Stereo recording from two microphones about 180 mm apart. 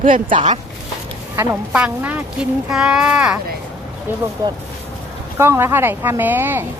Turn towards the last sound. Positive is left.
turn(degrees=-10)  # may be behind; listen again after turning